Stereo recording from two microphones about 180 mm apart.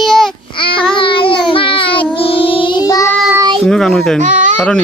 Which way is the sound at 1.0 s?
30° left (ahead or behind).